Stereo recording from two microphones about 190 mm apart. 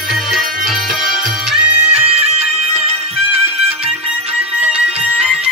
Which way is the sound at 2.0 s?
30° right (ahead or behind).